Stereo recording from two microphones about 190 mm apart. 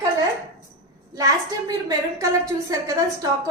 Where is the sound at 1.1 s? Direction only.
20° right (ahead or behind).